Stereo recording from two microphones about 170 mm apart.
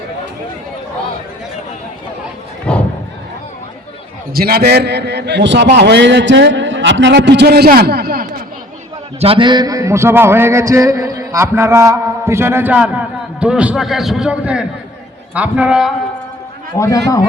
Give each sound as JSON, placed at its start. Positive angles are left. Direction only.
{"t": 2.7, "sound": "a sound", "side_deg": 5}
{"t": 4.4, "sound": "a man's voice", "side_deg": -65}
{"t": 9.2, "sound": "a man's voice", "side_deg": -30}
{"t": 16.7, "sound": "a man's voice", "side_deg": 15}